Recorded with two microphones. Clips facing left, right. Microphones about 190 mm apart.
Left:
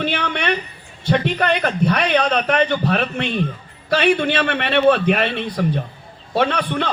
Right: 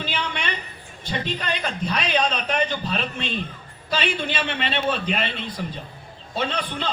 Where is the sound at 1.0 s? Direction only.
65° left (ahead or behind).